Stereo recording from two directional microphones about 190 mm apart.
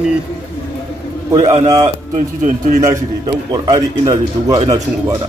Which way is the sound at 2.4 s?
40° right (ahead or behind).